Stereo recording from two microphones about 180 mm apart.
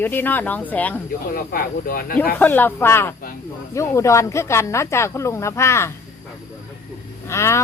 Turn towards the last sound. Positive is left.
turn(degrees=15)  # may be behind; listen again after turning